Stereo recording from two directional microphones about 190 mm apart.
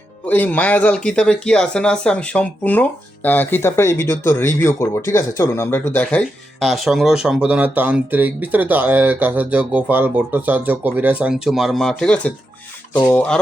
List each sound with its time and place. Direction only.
0.3 s speech: 10° left (ahead or behind)
13.0 s speech: 15° left (ahead or behind)